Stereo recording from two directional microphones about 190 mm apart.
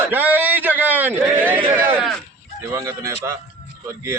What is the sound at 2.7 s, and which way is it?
Speech, 15° right (ahead or behind).